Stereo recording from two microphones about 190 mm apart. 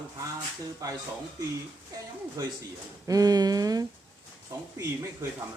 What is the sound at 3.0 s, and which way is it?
Speech, 20° right (ahead or behind).